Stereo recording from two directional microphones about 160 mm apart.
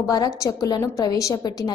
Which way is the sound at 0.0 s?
20° left (ahead or behind).